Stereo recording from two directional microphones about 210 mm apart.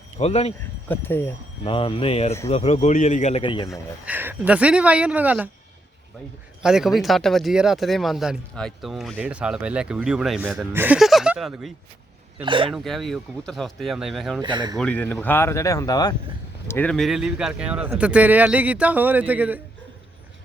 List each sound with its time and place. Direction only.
0.2 s speech: 30° left (ahead or behind)
0.9 s speech: 10° left (ahead or behind)
1.6 s speech: 25° left (ahead or behind)
3.7 s speech: 5° right (ahead or behind)
6.6 s speech: 5° right (ahead or behind)
12.4 s speech: 25° right (ahead or behind)
12.7 s speech: centre (ahead or behind)
14.4 s speech: 20° right (ahead or behind)
14.8 s speech: 5° left (ahead or behind)